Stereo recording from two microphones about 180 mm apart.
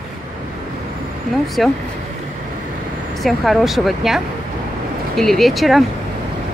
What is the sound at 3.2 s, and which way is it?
Speech, centre (ahead or behind).